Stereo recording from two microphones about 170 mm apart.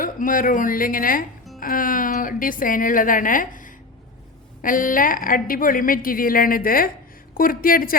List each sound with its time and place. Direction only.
0.0 s a woman's voice: 55° left (ahead or behind)